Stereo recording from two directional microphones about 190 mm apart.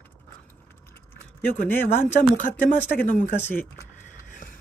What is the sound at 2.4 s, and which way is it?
Speech, 40° left (ahead or behind).